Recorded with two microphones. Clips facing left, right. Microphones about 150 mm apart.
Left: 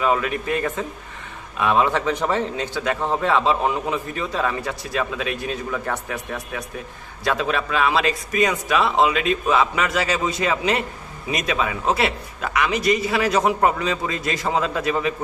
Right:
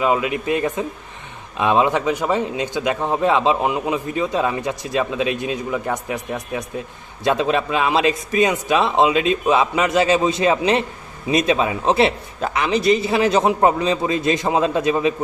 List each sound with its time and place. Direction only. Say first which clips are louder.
0.0 s a man's voice: right 2 dB; 20° right (ahead or behind)